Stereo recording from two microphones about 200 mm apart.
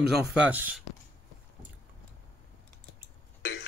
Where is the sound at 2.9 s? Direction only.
55° left (ahead or behind).